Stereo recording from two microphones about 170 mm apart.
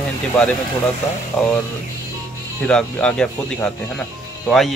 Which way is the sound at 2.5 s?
5° left (ahead or behind).